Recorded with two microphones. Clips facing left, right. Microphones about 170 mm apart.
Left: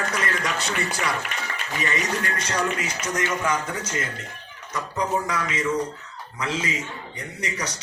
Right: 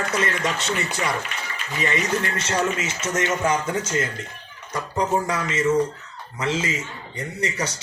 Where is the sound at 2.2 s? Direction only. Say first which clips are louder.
Right 2 dB; 25° right (ahead or behind).